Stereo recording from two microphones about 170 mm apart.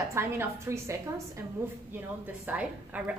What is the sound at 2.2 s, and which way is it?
Speech, 10° right (ahead or behind).